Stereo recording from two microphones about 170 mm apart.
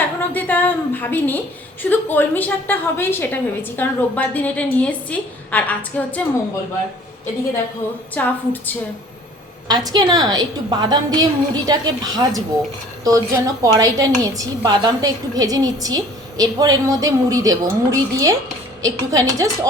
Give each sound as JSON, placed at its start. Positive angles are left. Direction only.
{"t": 0.2, "sound": "a sound", "side_deg": 10}
{"t": 1.8, "sound": "a woman's voice", "side_deg": 10}
{"t": 8.1, "sound": "a woman's voice", "side_deg": 10}
{"t": 9.6, "sound": "a woman's voice", "side_deg": -25}